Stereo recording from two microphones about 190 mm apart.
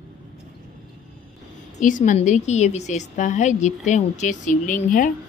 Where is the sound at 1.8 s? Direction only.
45° left (ahead or behind).